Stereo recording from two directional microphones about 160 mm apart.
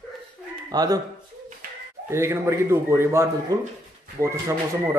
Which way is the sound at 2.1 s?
15° right (ahead or behind).